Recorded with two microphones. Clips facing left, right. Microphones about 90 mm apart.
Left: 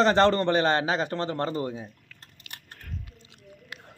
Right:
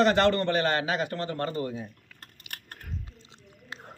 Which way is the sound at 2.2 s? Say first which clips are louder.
Right 3 dB; 55° right (ahead or behind).